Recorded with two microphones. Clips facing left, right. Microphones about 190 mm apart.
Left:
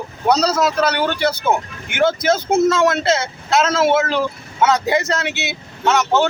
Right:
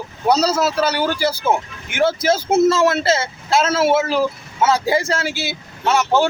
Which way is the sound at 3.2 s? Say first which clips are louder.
Even; 30° right (ahead or behind).